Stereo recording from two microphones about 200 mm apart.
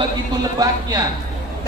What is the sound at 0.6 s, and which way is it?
Speech, 20° right (ahead or behind).